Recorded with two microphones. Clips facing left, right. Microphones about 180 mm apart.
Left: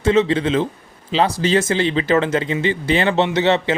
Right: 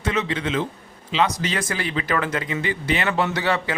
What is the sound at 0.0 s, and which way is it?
Speech, 25° left (ahead or behind).